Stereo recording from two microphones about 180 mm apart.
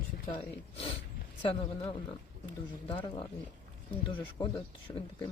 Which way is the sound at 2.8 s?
30° left (ahead or behind).